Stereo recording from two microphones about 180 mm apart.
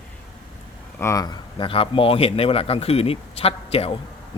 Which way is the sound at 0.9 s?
15° left (ahead or behind).